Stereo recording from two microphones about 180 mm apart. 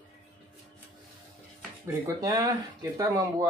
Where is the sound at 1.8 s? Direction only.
15° right (ahead or behind).